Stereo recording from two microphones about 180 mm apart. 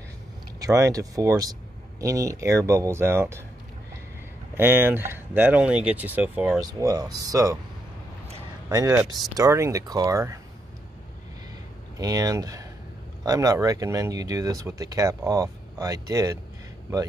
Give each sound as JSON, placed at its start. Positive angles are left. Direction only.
{"t": 0.6, "sound": "speech", "side_deg": -15}
{"t": 4.6, "sound": "speech", "side_deg": -10}
{"t": 6.6, "sound": "speech", "side_deg": -20}
{"t": 8.6, "sound": "speech", "side_deg": -20}
{"t": 8.9, "sound": "speech", "side_deg": 0}
{"t": 9.4, "sound": "speech", "side_deg": -15}
{"t": 12.0, "sound": "speech", "side_deg": -20}